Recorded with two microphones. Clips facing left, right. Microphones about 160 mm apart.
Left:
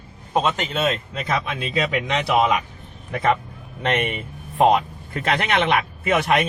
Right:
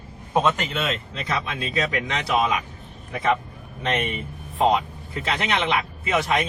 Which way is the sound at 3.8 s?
60° left (ahead or behind).